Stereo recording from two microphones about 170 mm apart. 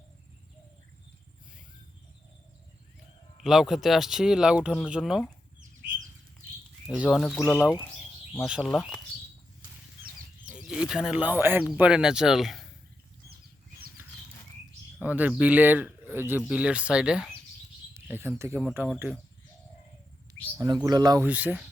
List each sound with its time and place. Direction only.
3.4 s speech: centre (ahead or behind)
6.8 s speech: 5° right (ahead or behind)
8.3 s speech: 5° right (ahead or behind)
10.5 s speech: 5° right (ahead or behind)
15.0 s speech: 10° right (ahead or behind)
20.6 s speech: 25° right (ahead or behind)
21.2 s speech: 10° right (ahead or behind)